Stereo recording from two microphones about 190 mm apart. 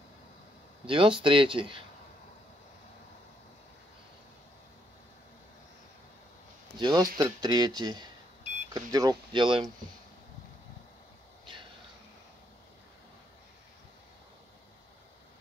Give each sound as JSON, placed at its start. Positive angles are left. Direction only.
{"t": 0.8, "sound": "speech", "side_deg": -25}
{"t": 6.8, "sound": "speech", "side_deg": -20}